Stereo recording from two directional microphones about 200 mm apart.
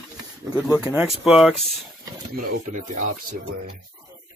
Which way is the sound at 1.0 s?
Centre (ahead or behind).